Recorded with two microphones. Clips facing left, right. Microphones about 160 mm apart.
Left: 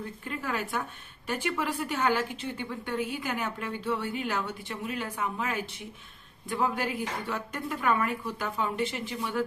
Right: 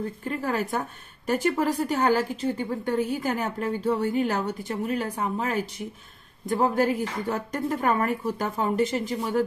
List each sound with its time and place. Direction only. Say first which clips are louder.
0.2 s a woman's voice: right 5 dB; 40° right (ahead or behind)